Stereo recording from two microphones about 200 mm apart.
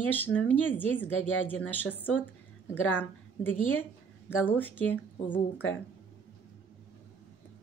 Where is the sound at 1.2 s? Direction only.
75° left (ahead or behind).